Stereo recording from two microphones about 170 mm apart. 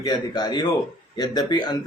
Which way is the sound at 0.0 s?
25° left (ahead or behind).